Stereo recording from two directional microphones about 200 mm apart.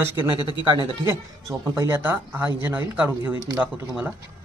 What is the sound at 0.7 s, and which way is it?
Speech, 20° right (ahead or behind).